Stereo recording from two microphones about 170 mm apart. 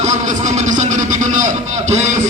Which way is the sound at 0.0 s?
45° right (ahead or behind).